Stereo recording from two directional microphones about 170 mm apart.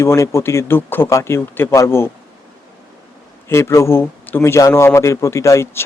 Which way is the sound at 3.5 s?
15° left (ahead or behind).